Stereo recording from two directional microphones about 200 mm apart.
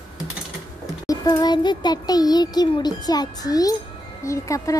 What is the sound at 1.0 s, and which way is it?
A child's voice, 15° left (ahead or behind).